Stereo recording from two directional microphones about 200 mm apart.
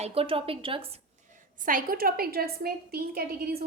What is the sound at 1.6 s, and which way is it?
A woman's voice, 45° right (ahead or behind).